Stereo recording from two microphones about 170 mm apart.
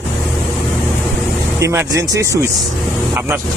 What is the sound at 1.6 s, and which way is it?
Speech, 15° right (ahead or behind).